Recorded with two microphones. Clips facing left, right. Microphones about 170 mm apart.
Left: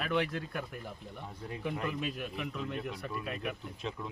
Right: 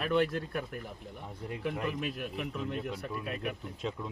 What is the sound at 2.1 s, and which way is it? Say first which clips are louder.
Speech: right 1 dB; 5° right (ahead or behind).